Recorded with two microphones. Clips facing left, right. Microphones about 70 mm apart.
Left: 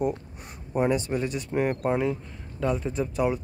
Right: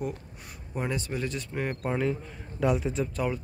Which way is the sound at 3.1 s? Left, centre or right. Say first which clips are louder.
Left 5 dB; centre.